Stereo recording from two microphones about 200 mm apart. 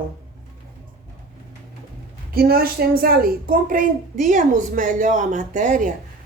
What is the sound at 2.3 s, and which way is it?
A woman's voice, 50° right (ahead or behind).